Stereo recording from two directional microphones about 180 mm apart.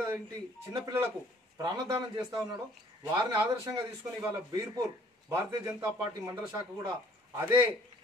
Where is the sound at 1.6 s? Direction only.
20° right (ahead or behind).